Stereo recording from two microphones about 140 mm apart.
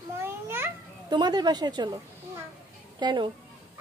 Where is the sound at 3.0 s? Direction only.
30° right (ahead or behind).